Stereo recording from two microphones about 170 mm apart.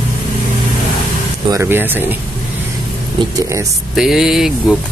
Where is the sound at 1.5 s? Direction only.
15° right (ahead or behind).